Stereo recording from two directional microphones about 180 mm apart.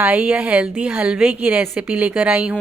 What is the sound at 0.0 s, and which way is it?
A woman's voice, 10° right (ahead or behind).